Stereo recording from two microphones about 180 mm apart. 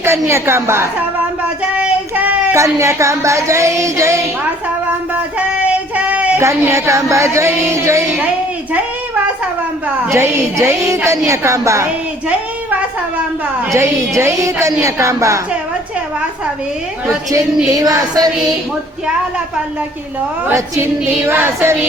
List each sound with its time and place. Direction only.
0.0 s speech: 15° right (ahead or behind)
5.6 s speech: 5° right (ahead or behind)
10.1 s speech: 15° right (ahead or behind)
14.2 s speech: 15° right (ahead or behind)
17.7 s a sound: 20° right (ahead or behind)
20.5 s speech: 15° right (ahead or behind)